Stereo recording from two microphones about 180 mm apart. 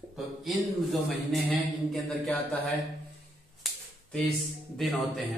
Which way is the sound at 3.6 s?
5° left (ahead or behind).